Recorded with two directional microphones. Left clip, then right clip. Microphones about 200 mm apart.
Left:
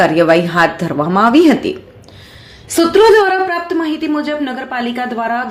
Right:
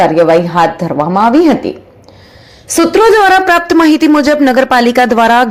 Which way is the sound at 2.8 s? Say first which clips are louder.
Right 2 dB; 35° right (ahead or behind).